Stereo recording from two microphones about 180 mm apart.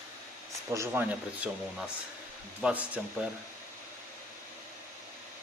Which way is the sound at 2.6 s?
5° right (ahead or behind).